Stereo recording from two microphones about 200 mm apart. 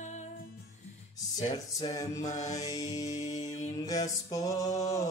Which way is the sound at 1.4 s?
20° left (ahead or behind).